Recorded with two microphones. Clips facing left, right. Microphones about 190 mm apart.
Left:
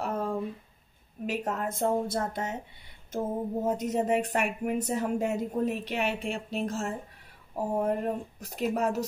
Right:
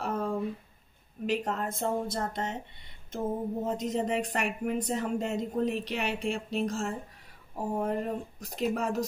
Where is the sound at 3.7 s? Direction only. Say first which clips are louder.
Left 4 dB; 5° left (ahead or behind).